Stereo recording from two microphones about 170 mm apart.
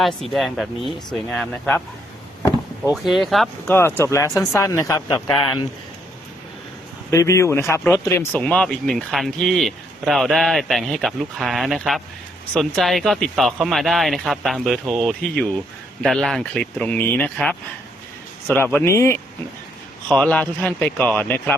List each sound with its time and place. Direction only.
0.0 s speech: centre (ahead or behind)
2.8 s speech: 5° right (ahead or behind)
3.7 s speech: 15° left (ahead or behind)
7.1 s speech: 15° left (ahead or behind)